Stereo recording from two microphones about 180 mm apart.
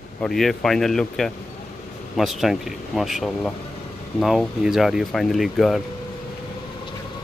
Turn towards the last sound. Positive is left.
turn(degrees=0)  # may be behind; listen again after turning